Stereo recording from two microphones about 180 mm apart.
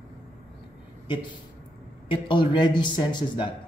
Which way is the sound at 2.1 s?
25° left (ahead or behind).